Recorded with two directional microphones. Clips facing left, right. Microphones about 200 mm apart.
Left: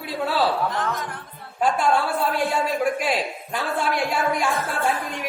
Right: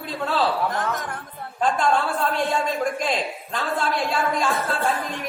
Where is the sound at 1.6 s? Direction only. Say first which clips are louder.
Left 1 dB; 10° left (ahead or behind).